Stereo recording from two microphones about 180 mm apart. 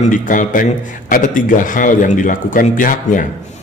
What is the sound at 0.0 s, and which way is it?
A man's voice, 45° left (ahead or behind).